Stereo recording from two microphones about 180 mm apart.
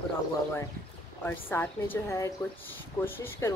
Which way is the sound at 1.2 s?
10° left (ahead or behind).